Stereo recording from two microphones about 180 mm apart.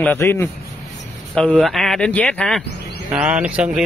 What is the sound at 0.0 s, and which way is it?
Speech, 10° left (ahead or behind).